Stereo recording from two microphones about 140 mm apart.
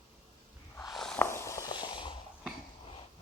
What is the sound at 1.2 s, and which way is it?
Walk, 20° left (ahead or behind).